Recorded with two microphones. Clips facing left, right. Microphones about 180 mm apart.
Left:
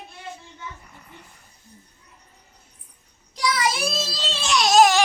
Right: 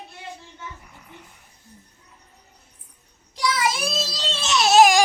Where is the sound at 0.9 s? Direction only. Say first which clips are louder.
Even; 5° right (ahead or behind).